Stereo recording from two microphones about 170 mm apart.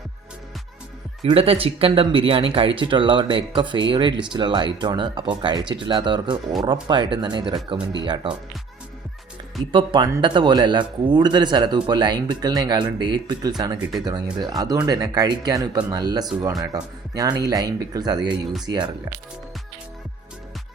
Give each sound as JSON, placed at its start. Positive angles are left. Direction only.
{"t": 1.2, "sound": "speech", "side_deg": -35}
{"t": 9.7, "sound": "speech", "side_deg": -25}